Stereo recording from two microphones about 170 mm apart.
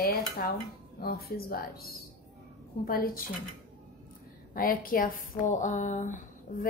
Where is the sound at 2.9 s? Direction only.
60° left (ahead or behind).